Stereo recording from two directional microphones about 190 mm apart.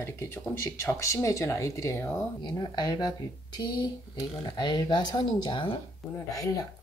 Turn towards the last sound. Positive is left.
turn(degrees=20)  # may be behind; listen again after turning